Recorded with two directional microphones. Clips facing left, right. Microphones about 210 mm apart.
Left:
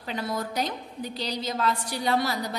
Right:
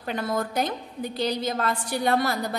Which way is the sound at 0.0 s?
55° right (ahead or behind).